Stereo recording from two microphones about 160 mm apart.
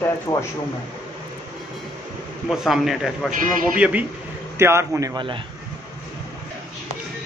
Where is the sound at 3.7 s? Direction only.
5° right (ahead or behind); by 5.4 s 30° right (ahead or behind).